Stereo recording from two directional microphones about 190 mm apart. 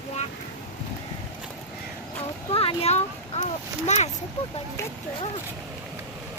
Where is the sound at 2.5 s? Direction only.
30° left (ahead or behind).